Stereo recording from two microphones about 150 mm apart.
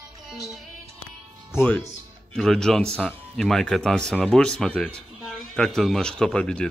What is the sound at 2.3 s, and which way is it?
Speech, 5° left (ahead or behind).